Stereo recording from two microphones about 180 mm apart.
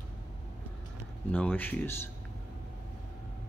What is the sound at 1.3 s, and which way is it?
Speech, 10° left (ahead or behind).